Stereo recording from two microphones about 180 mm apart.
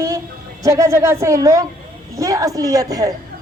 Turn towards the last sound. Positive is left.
turn(degrees=-20)  # may be behind; listen again after turning